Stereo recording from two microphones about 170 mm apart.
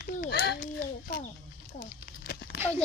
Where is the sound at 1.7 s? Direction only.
55° left (ahead or behind).